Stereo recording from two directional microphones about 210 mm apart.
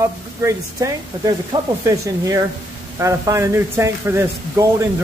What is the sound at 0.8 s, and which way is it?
Speech, 15° right (ahead or behind).